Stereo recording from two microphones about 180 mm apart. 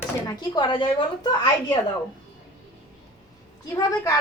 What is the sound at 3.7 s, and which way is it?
Speech, 20° left (ahead or behind).